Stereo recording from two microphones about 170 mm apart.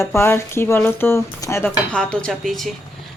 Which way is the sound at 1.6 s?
5° left (ahead or behind).